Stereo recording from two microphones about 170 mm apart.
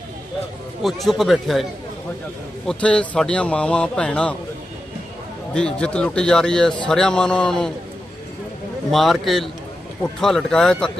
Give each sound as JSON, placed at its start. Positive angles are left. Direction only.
{"t": 0.8, "sound": "a man's voice", "side_deg": 0}
{"t": 5.5, "sound": "a man's voice", "side_deg": 5}
{"t": 8.9, "sound": "a man's voice", "side_deg": 0}